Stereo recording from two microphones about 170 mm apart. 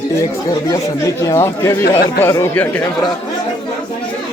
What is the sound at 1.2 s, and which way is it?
A man's voice, 15° left (ahead or behind).